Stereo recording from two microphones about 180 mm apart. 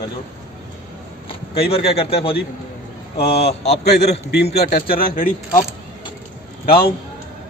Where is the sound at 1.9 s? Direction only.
35° left (ahead or behind).